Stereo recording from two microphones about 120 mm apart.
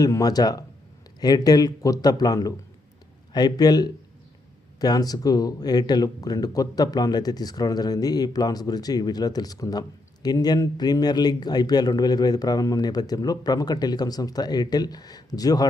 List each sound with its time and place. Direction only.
0.0 s speech: 30° left (ahead or behind)